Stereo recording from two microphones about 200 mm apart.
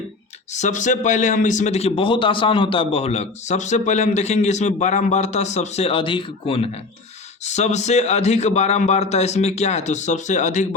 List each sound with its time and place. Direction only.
0.5 s a man's voice: 35° left (ahead or behind)